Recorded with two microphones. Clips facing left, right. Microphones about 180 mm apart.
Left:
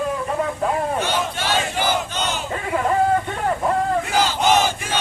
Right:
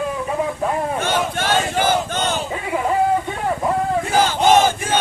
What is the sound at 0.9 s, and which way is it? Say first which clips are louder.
Battle cry: right 2 dB; 50° right (ahead or behind).